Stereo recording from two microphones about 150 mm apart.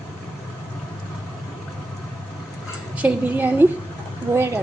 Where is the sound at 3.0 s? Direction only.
10° right (ahead or behind).